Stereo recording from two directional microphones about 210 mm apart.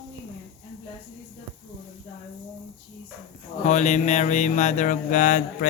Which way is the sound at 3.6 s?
35° left (ahead or behind).